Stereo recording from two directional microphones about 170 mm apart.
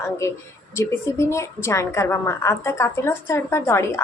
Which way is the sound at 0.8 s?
15° left (ahead or behind).